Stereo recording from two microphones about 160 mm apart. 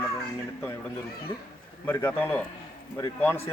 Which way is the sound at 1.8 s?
15° left (ahead or behind).